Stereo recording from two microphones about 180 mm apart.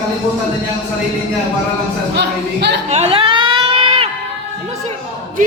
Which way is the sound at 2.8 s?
35° right (ahead or behind).